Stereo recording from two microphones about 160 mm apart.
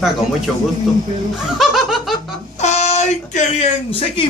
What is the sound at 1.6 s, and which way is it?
Laughter, centre (ahead or behind).